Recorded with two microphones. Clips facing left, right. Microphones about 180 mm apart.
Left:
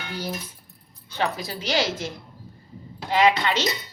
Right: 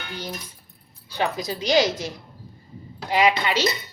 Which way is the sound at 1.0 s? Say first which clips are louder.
Right 2 dB; 15° right (ahead or behind).